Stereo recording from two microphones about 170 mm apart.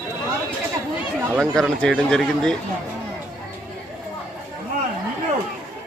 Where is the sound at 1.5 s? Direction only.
Centre (ahead or behind).